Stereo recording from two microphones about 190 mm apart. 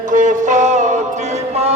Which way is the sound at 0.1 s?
40° right (ahead or behind).